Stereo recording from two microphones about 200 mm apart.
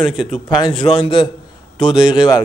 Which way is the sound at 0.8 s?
25° left (ahead or behind).